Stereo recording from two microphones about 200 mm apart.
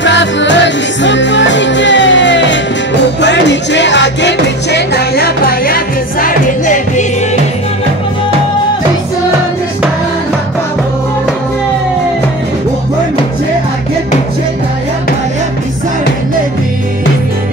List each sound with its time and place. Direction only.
0.0 s music: 65° left (ahead or behind); by 7.1 s 40° left (ahead or behind)